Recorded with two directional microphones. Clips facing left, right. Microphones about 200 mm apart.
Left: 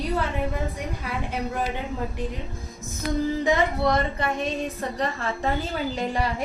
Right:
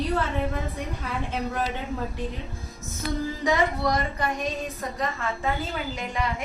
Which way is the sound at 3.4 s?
25° left (ahead or behind).